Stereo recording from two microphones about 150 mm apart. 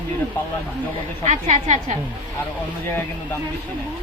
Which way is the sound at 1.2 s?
55° right (ahead or behind).